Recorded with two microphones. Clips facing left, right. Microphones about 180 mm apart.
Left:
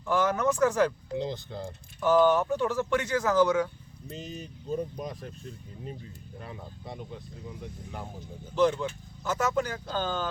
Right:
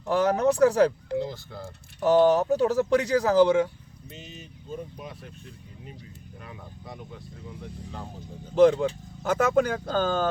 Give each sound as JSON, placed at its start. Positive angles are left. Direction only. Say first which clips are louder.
{"t": 0.0, "sound": "speech", "louder": "right 4 dB", "side_deg": -35}
{"t": 1.2, "sound": "speech", "louder": "even", "side_deg": 20}
{"t": 2.0, "sound": "speech", "louder": "right 3 dB", "side_deg": -35}
{"t": 4.1, "sound": "speech", "louder": "left 5 dB", "side_deg": 40}
{"t": 6.4, "sound": "speech", "louder": "left 2 dB", "side_deg": 25}
{"t": 7.6, "sound": "speech", "louder": "right 3 dB", "side_deg": 15}
{"t": 8.8, "sound": "speech", "louder": "right 6 dB", "side_deg": -55}